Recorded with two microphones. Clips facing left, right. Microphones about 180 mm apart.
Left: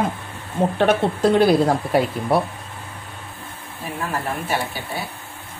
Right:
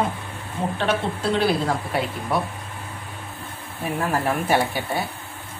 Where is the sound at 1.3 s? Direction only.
40° left (ahead or behind).